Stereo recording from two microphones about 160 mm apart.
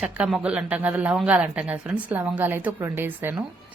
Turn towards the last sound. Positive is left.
turn(degrees=-15)  # may be behind; listen again after turning